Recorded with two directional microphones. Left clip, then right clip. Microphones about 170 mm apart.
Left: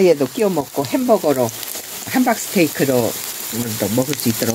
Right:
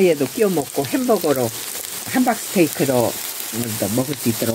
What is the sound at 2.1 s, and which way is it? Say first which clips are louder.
Speech: left 2 dB; 35° left (ahead or behind).